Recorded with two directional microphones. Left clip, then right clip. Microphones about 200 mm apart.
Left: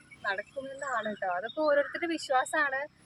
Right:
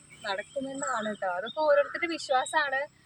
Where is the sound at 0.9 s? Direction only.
10° left (ahead or behind).